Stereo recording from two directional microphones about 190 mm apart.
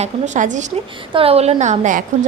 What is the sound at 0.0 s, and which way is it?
A woman's voice, 40° right (ahead or behind).